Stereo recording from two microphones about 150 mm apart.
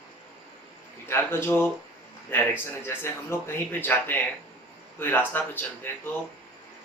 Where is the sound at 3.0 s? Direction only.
15° left (ahead or behind).